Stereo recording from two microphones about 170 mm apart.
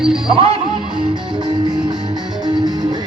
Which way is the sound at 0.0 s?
5° right (ahead or behind).